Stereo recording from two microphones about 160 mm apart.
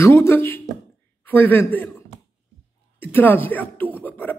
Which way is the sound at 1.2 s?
15° left (ahead or behind).